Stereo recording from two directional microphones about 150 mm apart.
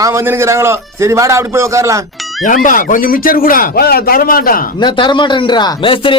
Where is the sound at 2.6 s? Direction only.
60° left (ahead or behind).